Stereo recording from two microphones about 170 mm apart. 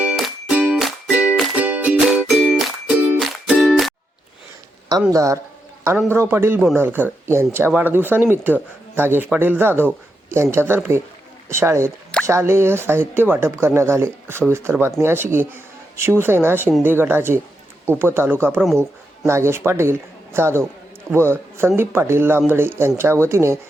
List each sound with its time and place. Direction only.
0.0 s music: 5° right (ahead or behind)
5.1 s a man's voice: 20° right (ahead or behind)